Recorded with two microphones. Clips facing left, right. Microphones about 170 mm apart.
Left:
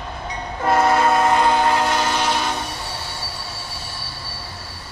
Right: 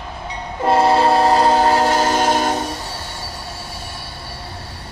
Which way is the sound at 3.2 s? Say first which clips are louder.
Right 2 dB; 50° right (ahead or behind).